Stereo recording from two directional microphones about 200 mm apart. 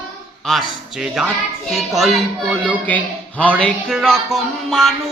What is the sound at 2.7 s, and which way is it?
Speech, 5° left (ahead or behind).